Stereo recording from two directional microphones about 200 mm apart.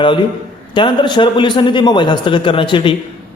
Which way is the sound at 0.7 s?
25° left (ahead or behind).